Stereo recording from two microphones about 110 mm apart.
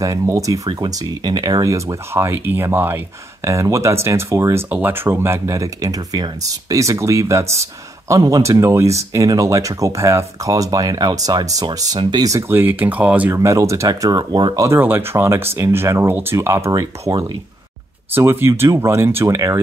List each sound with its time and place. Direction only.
0.0 s speech: 30° right (ahead or behind)
4.6 s speech: 15° right (ahead or behind)
13.3 s speech: 25° right (ahead or behind)
14.8 s speech: 20° right (ahead or behind)
17.1 s speech: 40° right (ahead or behind)
18.1 s speech: 20° right (ahead or behind)